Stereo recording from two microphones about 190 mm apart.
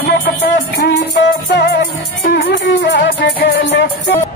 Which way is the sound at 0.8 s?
65° left (ahead or behind).